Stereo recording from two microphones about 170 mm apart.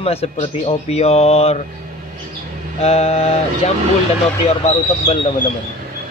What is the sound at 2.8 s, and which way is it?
Speech, 40° left (ahead or behind).